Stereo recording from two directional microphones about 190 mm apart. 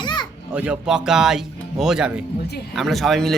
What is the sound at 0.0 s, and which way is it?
Children playing, 25° left (ahead or behind).